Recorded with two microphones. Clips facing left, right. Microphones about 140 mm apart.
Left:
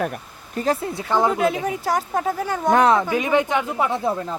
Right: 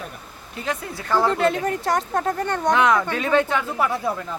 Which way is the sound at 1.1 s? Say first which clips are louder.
Even; 20° left (ahead or behind).